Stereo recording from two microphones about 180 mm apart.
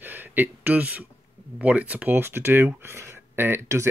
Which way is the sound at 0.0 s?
10° right (ahead or behind).